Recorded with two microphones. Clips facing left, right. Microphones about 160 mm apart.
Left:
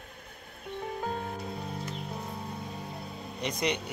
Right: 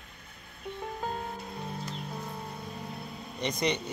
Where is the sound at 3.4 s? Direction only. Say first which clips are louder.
Right 1 dB; 5° left (ahead or behind).